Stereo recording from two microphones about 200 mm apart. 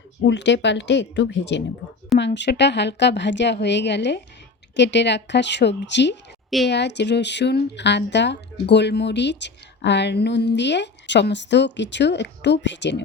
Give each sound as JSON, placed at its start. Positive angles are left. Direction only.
{"t": 0.2, "sound": "speech", "side_deg": 60}